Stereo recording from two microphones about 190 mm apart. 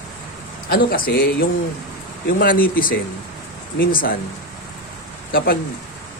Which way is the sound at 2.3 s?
50° left (ahead or behind).